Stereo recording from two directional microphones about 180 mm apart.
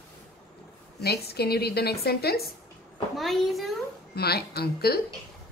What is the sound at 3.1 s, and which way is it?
Speech, centre (ahead or behind).